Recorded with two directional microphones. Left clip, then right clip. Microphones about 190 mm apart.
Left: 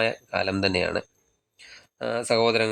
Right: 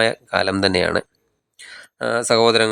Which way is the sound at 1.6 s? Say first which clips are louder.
Right 7 dB; 20° right (ahead or behind).